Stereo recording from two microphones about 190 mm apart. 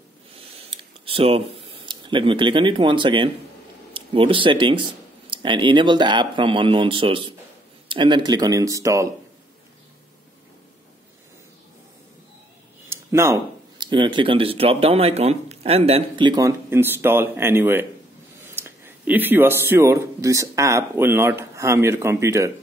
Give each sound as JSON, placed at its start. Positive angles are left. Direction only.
{"t": 0.3, "sound": "a sound", "side_deg": -30}
{"t": 3.9, "sound": "speech", "side_deg": -30}
{"t": 12.9, "sound": "speech", "side_deg": -15}